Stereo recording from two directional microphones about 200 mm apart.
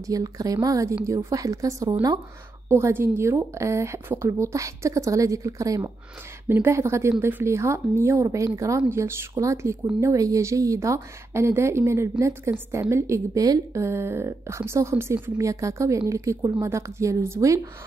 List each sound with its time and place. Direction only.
0.0 s a woman's voice: 15° right (ahead or behind)